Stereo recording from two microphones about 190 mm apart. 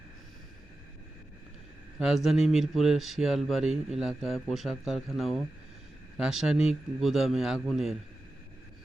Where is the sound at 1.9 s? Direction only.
Centre (ahead or behind).